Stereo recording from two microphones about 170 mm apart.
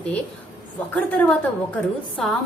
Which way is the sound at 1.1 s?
10° left (ahead or behind).